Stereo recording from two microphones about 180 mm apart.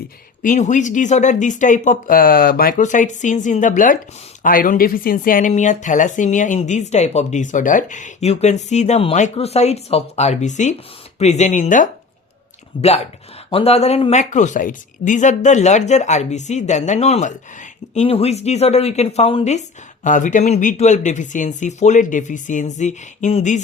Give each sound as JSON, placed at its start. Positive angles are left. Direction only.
{"t": 0.4, "sound": "speech", "side_deg": 40}
{"t": 12.7, "sound": "speech", "side_deg": 30}